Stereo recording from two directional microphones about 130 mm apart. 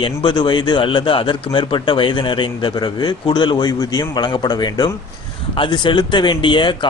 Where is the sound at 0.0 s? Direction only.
40° left (ahead or behind).